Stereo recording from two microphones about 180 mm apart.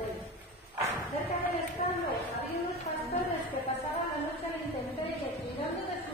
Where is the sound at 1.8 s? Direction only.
40° left (ahead or behind).